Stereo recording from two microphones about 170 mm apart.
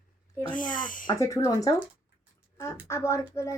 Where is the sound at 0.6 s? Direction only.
50° left (ahead or behind).